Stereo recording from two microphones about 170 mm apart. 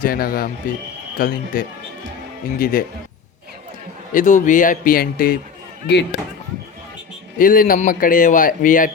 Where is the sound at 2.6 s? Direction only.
55° left (ahead or behind).